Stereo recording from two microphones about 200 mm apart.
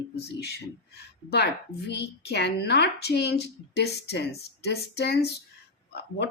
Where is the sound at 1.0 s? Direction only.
55° left (ahead or behind).